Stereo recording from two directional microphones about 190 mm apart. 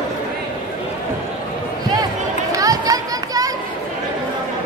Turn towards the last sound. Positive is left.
turn(degrees=-20)  # may be behind; listen again after turning